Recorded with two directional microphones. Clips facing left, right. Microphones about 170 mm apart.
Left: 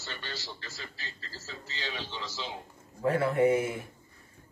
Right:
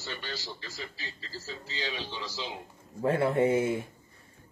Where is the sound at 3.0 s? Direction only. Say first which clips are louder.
Even; 25° right (ahead or behind).